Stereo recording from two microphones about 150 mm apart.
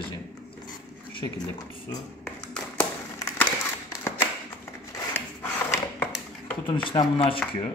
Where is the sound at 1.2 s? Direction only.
30° left (ahead or behind).